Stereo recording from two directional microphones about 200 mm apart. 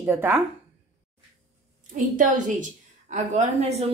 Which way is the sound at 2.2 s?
40° right (ahead or behind).